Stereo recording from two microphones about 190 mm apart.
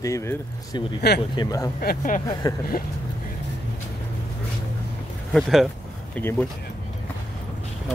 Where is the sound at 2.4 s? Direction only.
20° left (ahead or behind).